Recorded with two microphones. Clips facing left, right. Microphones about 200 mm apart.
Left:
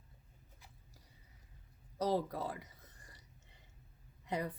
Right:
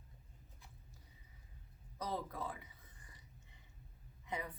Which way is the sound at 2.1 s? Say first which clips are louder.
Left 7 dB; 35° left (ahead or behind).